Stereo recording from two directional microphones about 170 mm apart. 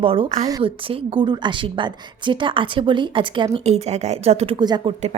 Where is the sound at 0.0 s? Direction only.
30° right (ahead or behind).